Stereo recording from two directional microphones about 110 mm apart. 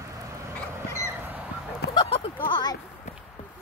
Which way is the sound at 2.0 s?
55° left (ahead or behind).